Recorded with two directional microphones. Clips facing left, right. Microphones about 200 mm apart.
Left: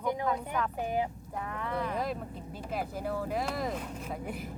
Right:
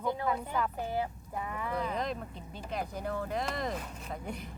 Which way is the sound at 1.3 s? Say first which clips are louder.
Even; 5° right (ahead or behind).